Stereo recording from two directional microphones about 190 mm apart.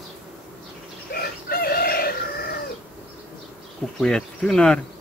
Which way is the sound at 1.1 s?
55° left (ahead or behind).